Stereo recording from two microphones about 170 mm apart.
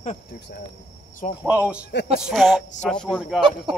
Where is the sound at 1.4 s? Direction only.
5° right (ahead or behind).